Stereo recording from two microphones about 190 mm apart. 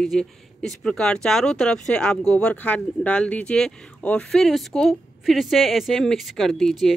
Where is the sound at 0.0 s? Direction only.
5° left (ahead or behind).